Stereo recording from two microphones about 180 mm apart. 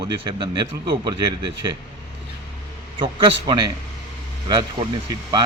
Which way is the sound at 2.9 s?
25° right (ahead or behind).